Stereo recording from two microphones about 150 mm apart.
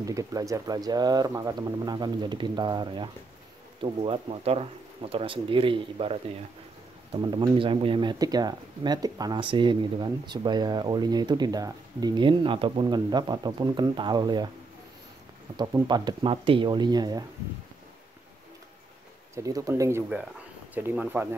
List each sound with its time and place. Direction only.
0.0 s speech: 20° right (ahead or behind)
15.5 s speech: 25° right (ahead or behind)
19.3 s speech: 20° right (ahead or behind)